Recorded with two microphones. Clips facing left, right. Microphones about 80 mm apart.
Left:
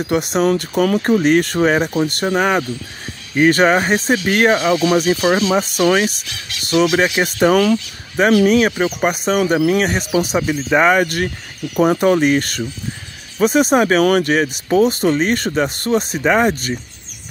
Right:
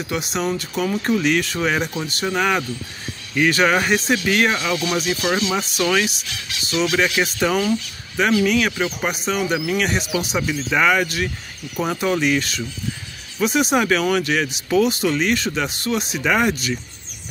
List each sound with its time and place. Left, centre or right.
0.0 s speech: left
7.5 s speech: left
8.2 s speech: left